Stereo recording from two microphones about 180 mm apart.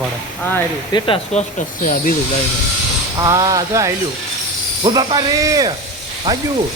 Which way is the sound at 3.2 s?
20° right (ahead or behind).